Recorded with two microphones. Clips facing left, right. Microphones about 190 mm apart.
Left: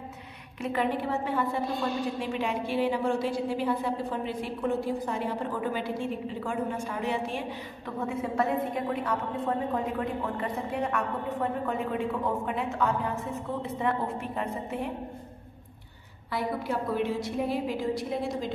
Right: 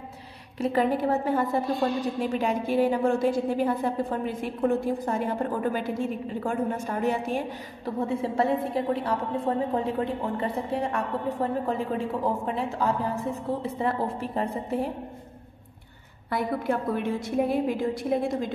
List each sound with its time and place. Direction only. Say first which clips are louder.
0.6 s a woman's voice: right 5 dB; 40° right (ahead or behind)
16.3 s a woman's voice: right 4 dB; 55° right (ahead or behind)